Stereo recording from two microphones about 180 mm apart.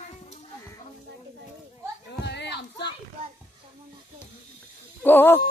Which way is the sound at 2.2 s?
70° left (ahead or behind).